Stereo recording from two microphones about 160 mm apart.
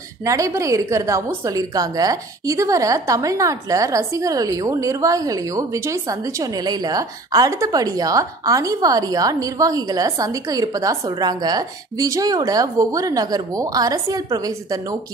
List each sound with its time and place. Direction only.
0.2 s a woman's voice: 20° right (ahead or behind)